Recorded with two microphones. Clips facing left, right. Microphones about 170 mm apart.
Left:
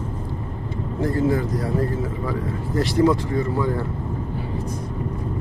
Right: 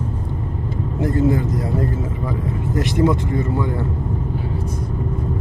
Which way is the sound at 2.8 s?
20° right (ahead or behind).